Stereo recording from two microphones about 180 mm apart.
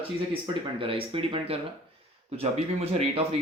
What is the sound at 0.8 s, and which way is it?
Speech, 30° right (ahead or behind).